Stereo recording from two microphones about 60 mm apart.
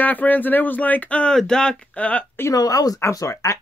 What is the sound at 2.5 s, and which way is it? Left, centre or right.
Speech, left.